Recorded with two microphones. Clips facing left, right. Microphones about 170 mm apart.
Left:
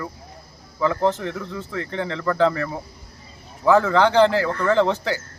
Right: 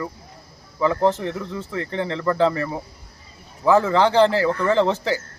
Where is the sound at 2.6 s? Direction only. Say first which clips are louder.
Right 1 dB; 5° right (ahead or behind).